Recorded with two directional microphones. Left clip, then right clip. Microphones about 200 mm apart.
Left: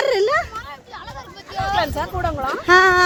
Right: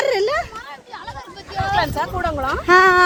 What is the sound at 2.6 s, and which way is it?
Speech, 5° left (ahead or behind).